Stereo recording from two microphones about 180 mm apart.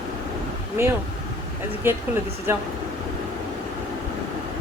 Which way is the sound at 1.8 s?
15° right (ahead or behind).